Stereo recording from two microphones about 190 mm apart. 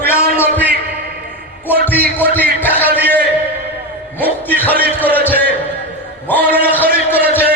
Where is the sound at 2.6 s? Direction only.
10° left (ahead or behind).